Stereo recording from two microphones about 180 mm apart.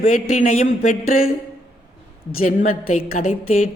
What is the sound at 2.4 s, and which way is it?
Speech, 50° left (ahead or behind).